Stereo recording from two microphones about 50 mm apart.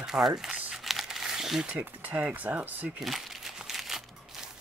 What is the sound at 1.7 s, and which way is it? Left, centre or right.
Speech, right.